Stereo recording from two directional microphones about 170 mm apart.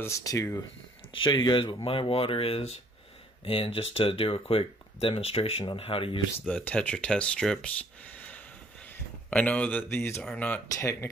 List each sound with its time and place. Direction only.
0.0 s speech: 20° left (ahead or behind)
6.5 s speech: 10° left (ahead or behind)